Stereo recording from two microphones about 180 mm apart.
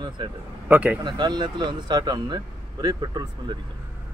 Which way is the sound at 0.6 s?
10° right (ahead or behind).